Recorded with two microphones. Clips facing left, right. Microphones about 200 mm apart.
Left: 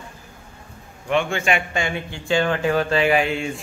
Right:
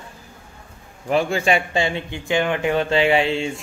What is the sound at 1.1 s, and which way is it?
Speech, 35° right (ahead or behind).